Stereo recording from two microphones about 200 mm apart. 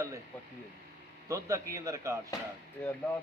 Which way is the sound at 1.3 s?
15° right (ahead or behind).